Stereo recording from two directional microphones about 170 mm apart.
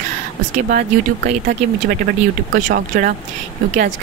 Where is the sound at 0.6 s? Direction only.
60° right (ahead or behind).